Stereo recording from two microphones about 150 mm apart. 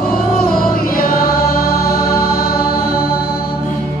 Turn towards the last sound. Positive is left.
turn(degrees=90)